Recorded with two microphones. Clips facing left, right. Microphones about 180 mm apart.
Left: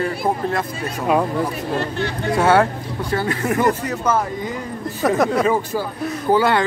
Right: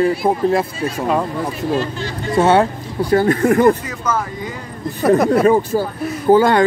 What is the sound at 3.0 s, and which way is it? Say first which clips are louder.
Speech: right 8 dB; 40° right (ahead or behind).